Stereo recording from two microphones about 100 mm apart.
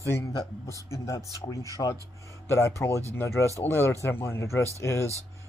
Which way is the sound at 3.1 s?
30° left (ahead or behind).